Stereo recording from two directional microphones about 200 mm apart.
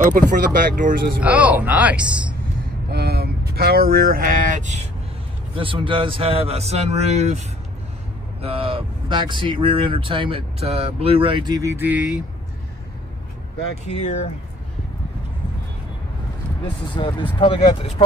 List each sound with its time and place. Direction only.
0.2 s a man's voice: 40° right (ahead or behind)
1.2 s speech: 5° right (ahead or behind)
2.9 s vehicle: 50° right (ahead or behind); by 4.8 s 35° right (ahead or behind)
5.5 s speech: 25° right (ahead or behind); by 12.1 s 10° right (ahead or behind)
13.8 s speech: 30° left (ahead or behind)
16.6 s speech: 25° left (ahead or behind)